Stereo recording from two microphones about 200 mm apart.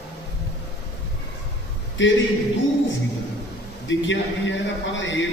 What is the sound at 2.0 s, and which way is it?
Speech, 70° left (ahead or behind).